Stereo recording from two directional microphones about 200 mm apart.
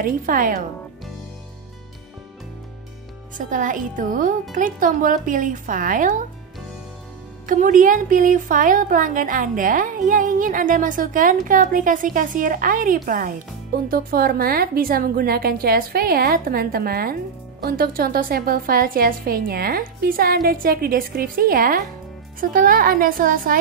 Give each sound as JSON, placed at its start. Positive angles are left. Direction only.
{"t": 0.0, "sound": "a woman's voice", "side_deg": -45}
{"t": 3.3, "sound": "a woman's voice", "side_deg": -40}
{"t": 7.4, "sound": "a woman's voice", "side_deg": -40}